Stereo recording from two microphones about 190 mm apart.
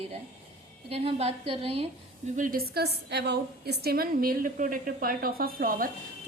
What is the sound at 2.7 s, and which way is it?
A woman's voice, 60° right (ahead or behind).